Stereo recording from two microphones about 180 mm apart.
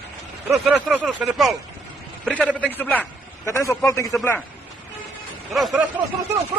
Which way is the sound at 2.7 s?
10° left (ahead or behind).